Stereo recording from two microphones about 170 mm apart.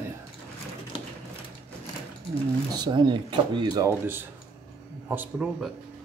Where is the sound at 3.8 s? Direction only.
10° right (ahead or behind).